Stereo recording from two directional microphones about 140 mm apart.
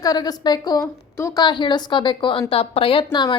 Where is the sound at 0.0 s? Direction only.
30° left (ahead or behind).